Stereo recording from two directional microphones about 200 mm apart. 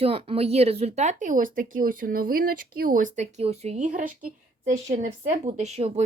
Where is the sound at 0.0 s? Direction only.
30° right (ahead or behind).